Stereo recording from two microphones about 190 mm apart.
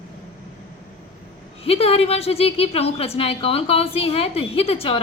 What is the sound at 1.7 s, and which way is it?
A woman's voice, 30° left (ahead or behind).